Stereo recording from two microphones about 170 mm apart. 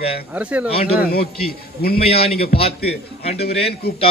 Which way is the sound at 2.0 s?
35° left (ahead or behind).